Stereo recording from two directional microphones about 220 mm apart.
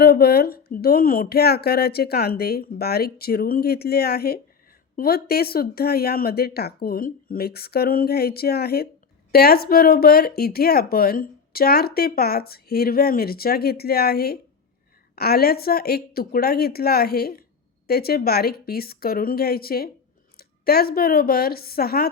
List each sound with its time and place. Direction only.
0.0 s a woman's voice: 45° left (ahead or behind)